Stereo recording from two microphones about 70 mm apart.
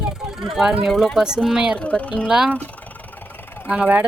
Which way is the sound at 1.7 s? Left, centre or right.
Centre.